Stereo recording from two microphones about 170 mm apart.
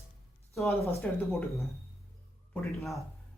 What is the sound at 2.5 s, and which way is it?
Speech, centre (ahead or behind).